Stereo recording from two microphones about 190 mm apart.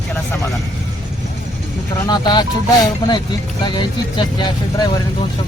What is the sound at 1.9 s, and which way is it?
Speech, 20° left (ahead or behind).